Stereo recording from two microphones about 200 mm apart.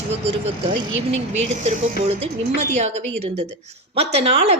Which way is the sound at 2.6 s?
35° right (ahead or behind).